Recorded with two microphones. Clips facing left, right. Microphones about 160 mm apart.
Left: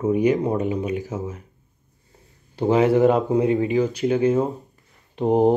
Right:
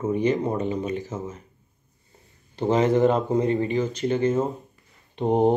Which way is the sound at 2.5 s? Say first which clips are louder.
Left 3 dB; 10° left (ahead or behind).